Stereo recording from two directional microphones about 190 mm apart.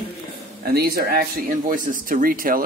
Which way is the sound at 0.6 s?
55° right (ahead or behind).